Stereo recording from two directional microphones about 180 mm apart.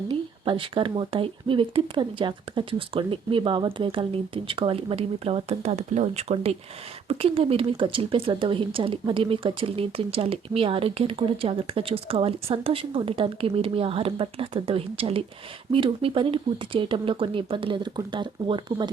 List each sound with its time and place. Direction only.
0.1 s speech: 30° right (ahead or behind)